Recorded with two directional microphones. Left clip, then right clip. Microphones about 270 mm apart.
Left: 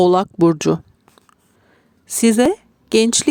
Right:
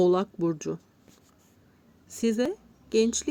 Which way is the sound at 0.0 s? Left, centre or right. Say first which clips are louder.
Left 10 dB; left.